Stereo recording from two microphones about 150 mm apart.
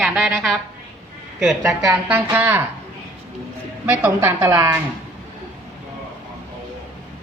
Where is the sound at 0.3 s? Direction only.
Centre (ahead or behind); by 2.6 s 15° right (ahead or behind).